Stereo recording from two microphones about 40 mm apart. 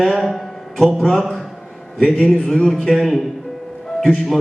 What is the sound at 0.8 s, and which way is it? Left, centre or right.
Speech, centre.